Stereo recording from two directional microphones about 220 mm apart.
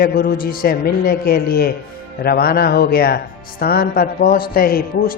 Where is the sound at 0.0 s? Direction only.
45° left (ahead or behind).